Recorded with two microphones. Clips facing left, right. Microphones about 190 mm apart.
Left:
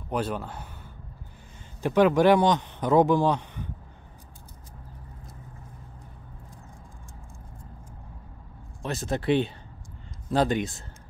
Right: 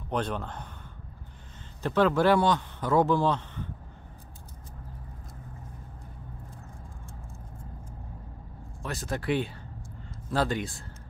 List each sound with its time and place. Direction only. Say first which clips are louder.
0.1 s speech: left 1 dB; 5° left (ahead or behind)
1.8 s a man's voice: left 4 dB; 15° left (ahead or behind)
8.8 s speech: left 4 dB; 25° left (ahead or behind)